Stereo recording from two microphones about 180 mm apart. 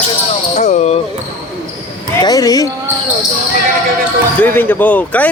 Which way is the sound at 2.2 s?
20° left (ahead or behind).